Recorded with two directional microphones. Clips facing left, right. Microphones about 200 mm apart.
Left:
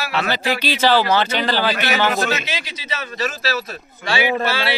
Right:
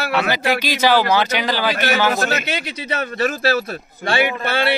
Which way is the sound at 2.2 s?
60° right (ahead or behind).